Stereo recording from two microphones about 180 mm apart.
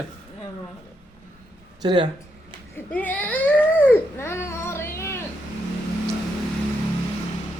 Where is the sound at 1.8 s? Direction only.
25° right (ahead or behind).